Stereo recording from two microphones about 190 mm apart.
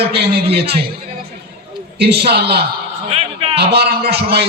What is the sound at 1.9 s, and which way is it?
Speech, 60° right (ahead or behind).